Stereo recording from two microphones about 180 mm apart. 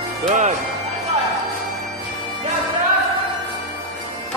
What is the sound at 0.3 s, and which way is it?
Speech, 40° right (ahead or behind).